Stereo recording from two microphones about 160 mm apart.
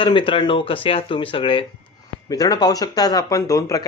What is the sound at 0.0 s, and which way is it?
Speech, 30° left (ahead or behind).